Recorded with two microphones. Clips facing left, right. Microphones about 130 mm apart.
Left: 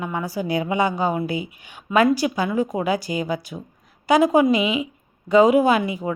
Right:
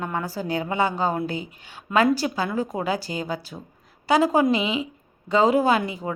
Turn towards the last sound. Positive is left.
turn(degrees=10)  # may be behind; listen again after turning